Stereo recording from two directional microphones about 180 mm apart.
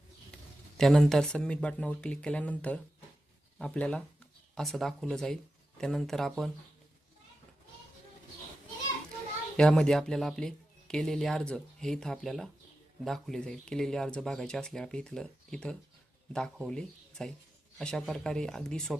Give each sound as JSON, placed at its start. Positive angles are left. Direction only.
{"t": 0.8, "sound": "speech", "side_deg": 0}
{"t": 9.6, "sound": "speech", "side_deg": 5}